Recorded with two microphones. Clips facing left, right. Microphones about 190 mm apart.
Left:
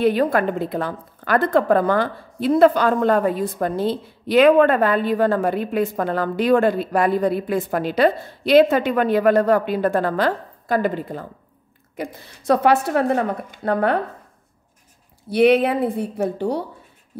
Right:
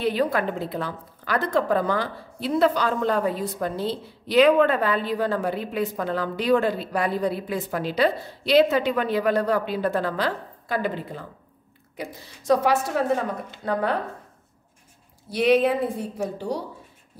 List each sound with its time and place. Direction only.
0.0 s a woman's voice: 50° left (ahead or behind)
15.2 s a woman's voice: 60° left (ahead or behind)